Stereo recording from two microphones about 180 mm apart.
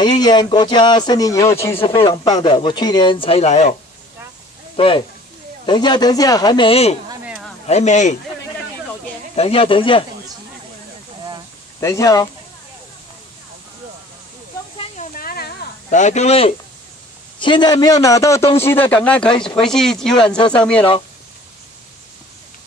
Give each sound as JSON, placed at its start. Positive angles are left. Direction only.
{"t": 0.0, "sound": "speech", "side_deg": 25}
{"t": 4.7, "sound": "speech", "side_deg": 30}
{"t": 7.2, "sound": "a sound", "side_deg": -5}
{"t": 7.6, "sound": "speech", "side_deg": 40}
{"t": 9.3, "sound": "speech", "side_deg": 30}
{"t": 11.8, "sound": "speech", "side_deg": 20}
{"t": 15.1, "sound": "a sound", "side_deg": 55}
{"t": 15.9, "sound": "speech", "side_deg": 40}